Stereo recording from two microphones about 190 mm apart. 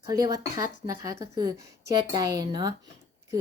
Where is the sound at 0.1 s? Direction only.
20° right (ahead or behind).